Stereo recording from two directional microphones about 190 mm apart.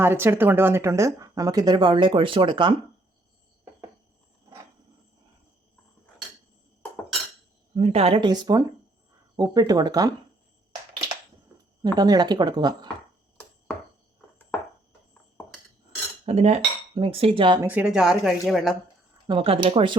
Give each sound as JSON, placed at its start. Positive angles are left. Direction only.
{"t": 0.0, "sound": "speech", "side_deg": -10}
{"t": 7.8, "sound": "speech", "side_deg": -35}
{"t": 11.9, "sound": "speech", "side_deg": -20}
{"t": 16.2, "sound": "speech", "side_deg": -35}
{"t": 17.6, "sound": "speech", "side_deg": -10}
{"t": 19.3, "sound": "speech", "side_deg": -25}